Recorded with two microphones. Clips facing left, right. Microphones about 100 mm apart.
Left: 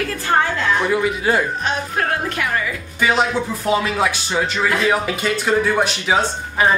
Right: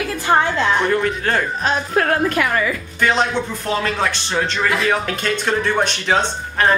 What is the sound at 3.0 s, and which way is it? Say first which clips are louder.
Speech: even; 5° left (ahead or behind).